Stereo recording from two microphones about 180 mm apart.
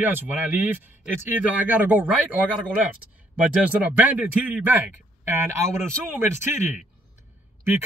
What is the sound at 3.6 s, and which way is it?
Speech, 10° right (ahead or behind).